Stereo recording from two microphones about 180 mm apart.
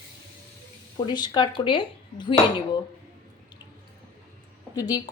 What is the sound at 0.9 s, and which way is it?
A woman's voice, 25° left (ahead or behind).